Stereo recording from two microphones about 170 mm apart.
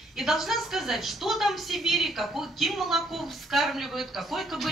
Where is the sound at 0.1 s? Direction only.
Centre (ahead or behind).